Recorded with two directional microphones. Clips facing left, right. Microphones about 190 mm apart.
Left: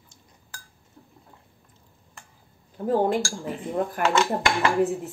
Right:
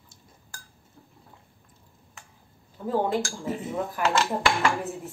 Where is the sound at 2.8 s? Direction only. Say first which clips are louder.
Left 6 dB; 55° left (ahead or behind).